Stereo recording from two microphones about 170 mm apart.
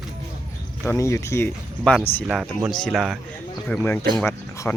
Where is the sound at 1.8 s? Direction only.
Centre (ahead or behind).